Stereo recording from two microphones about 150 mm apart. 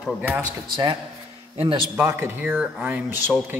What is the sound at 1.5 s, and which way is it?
Speech, 35° right (ahead or behind).